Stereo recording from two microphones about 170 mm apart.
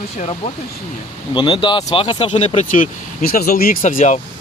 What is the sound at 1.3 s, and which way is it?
Speech, 30° left (ahead or behind).